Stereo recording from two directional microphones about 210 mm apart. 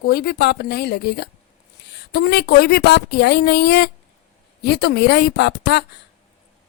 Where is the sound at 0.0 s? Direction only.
50° left (ahead or behind).